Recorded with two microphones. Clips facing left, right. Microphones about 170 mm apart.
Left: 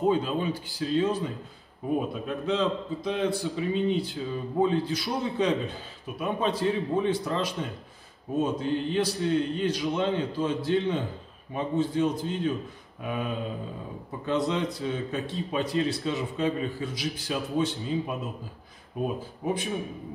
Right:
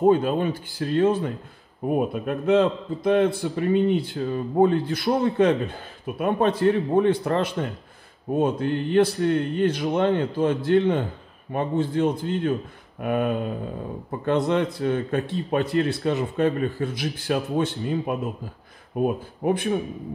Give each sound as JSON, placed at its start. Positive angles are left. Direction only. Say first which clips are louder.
{"t": 0.0, "sound": "a man's voice", "louder": "right 6 dB", "side_deg": -55}
{"t": 14.5, "sound": "a man's voice", "louder": "right 6 dB", "side_deg": -60}